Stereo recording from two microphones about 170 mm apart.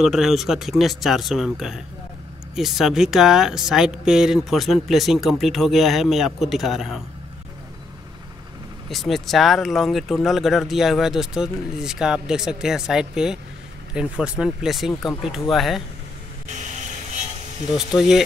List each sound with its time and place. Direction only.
0.0 s speech: centre (ahead or behind)
8.8 s speech: centre (ahead or behind)
16.4 s vehicle: 45° right (ahead or behind)
17.7 s speech: centre (ahead or behind)